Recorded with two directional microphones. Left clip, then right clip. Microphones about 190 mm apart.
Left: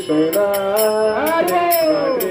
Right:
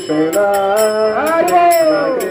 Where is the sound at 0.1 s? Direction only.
15° left (ahead or behind).